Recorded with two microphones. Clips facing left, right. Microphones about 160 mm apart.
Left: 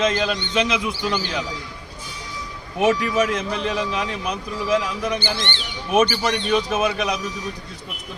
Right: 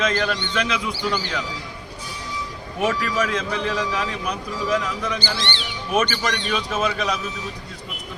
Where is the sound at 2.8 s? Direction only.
20° left (ahead or behind).